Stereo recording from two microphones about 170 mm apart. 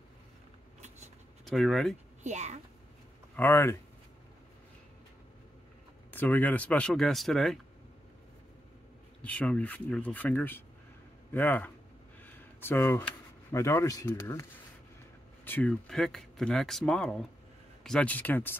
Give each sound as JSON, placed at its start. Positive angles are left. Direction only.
{"t": 0.7, "sound": "a sound", "side_deg": -40}
{"t": 1.4, "sound": "speech", "side_deg": 0}
{"t": 2.2, "sound": "a child's voice", "side_deg": -40}
{"t": 3.3, "sound": "speech", "side_deg": 10}
{"t": 6.1, "sound": "speech", "side_deg": 10}
{"t": 9.2, "sound": "speech", "side_deg": 10}
{"t": 15.4, "sound": "speech", "side_deg": 10}